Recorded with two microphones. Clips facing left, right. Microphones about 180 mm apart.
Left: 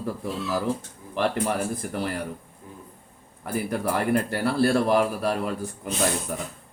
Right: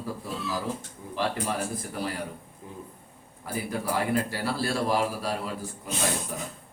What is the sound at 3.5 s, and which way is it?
A man's voice, 55° left (ahead or behind).